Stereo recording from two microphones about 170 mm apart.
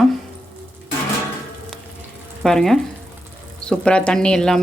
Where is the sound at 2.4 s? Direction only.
5° left (ahead or behind).